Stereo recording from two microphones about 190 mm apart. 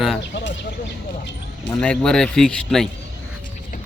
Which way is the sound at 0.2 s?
70° left (ahead or behind).